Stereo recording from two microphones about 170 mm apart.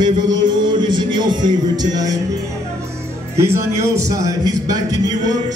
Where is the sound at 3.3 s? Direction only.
15° right (ahead or behind).